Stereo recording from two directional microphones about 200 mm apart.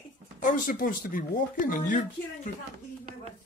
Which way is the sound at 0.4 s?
40° left (ahead or behind).